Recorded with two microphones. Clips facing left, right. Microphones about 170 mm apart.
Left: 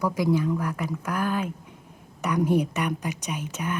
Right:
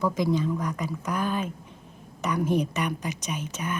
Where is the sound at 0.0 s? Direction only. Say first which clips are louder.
Left 1 dB; 15° left (ahead or behind).